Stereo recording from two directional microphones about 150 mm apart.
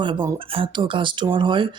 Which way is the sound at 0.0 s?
35° right (ahead or behind).